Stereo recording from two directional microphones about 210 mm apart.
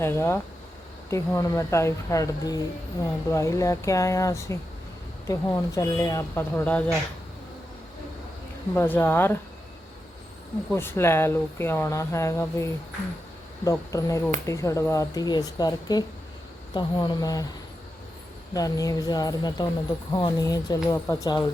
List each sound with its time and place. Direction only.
0.0 s speech: 10° left (ahead or behind)
8.7 s speech: 10° left (ahead or behind)
10.7 s speech: 10° left (ahead or behind)
18.5 s speech: 15° left (ahead or behind)